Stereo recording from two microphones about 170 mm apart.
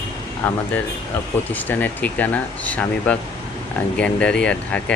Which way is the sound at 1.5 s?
10° left (ahead or behind).